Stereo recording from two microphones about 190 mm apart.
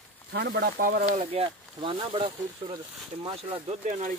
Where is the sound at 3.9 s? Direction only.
40° right (ahead or behind).